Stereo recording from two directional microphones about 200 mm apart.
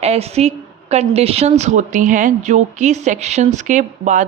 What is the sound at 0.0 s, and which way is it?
A woman's voice, 30° right (ahead or behind).